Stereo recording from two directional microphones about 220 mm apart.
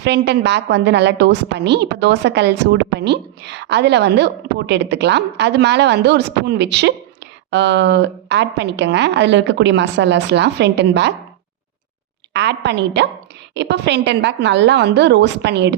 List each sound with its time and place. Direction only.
0.0 s a woman's voice: 50° right (ahead or behind)
12.3 s a woman's voice: 50° right (ahead or behind)